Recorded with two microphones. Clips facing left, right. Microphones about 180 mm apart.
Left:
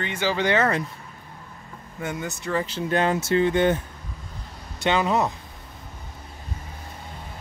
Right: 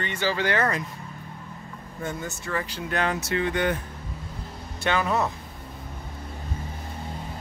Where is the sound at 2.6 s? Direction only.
25° left (ahead or behind).